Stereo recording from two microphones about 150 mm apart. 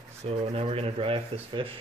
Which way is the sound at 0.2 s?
40° right (ahead or behind).